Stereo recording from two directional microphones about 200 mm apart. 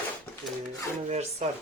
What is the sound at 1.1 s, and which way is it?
Speech, 35° right (ahead or behind).